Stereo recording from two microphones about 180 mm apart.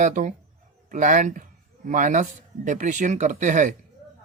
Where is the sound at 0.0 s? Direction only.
45° right (ahead or behind).